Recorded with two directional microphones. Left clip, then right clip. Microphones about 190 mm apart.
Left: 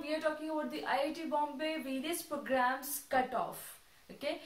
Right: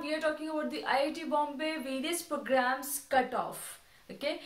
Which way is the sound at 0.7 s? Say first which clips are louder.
Right 5 dB; 20° right (ahead or behind).